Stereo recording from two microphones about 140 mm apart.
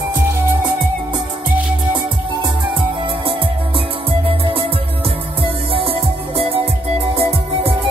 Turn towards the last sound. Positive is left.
turn(degrees=-45)  # may be behind; listen again after turning